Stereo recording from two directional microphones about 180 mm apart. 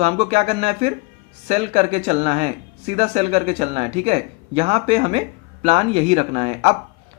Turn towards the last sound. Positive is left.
turn(degrees=-35)  # may be behind; listen again after turning